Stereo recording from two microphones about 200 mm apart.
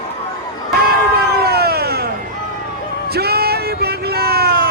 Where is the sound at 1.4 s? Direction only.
50° right (ahead or behind).